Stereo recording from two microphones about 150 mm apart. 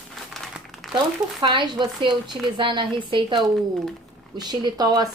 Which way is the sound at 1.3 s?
30° right (ahead or behind).